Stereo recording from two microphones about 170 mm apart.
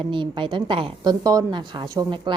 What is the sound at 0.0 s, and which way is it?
A woman's voice, 30° right (ahead or behind).